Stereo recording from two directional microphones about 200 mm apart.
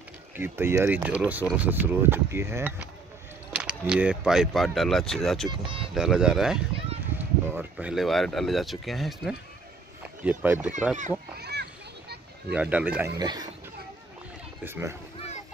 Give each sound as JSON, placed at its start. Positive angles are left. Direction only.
{"t": 0.4, "sound": "speech", "side_deg": -10}
{"t": 5.5, "sound": "speech", "side_deg": -25}
{"t": 5.9, "sound": "speech", "side_deg": -5}
{"t": 11.3, "sound": "a sound", "side_deg": -55}
{"t": 12.5, "sound": "speech", "side_deg": -5}
{"t": 13.2, "sound": "speech", "side_deg": -20}
{"t": 14.6, "sound": "speech", "side_deg": -10}